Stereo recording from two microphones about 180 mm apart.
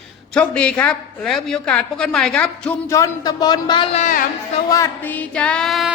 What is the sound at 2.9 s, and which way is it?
A man's voice, 20° left (ahead or behind).